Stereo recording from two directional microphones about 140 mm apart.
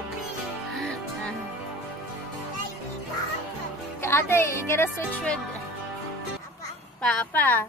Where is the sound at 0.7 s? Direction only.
5° left (ahead or behind).